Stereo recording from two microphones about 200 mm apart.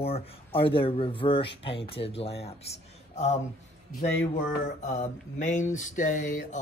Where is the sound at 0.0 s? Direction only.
30° left (ahead or behind).